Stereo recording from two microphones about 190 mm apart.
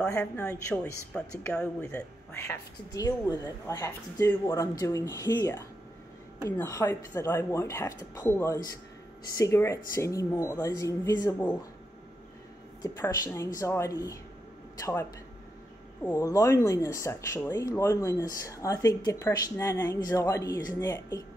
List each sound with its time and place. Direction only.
0.1 s speech: 5° left (ahead or behind)
12.8 s speech: 15° left (ahead or behind)